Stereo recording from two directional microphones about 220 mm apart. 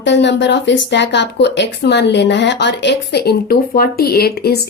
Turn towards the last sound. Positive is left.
turn(degrees=45)  # may be behind; listen again after turning